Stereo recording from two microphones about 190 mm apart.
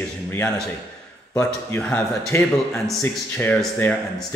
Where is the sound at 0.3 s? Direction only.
10° left (ahead or behind).